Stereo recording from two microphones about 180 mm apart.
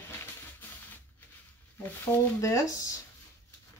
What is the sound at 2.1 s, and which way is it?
Speech, 20° left (ahead or behind).